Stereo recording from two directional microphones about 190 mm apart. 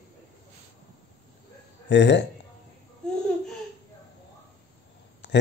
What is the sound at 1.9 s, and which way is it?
Speech, 65° left (ahead or behind).